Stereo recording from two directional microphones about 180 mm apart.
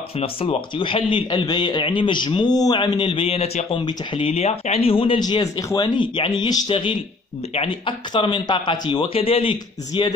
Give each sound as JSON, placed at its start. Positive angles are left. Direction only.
{"t": 0.2, "sound": "a man's voice", "side_deg": 30}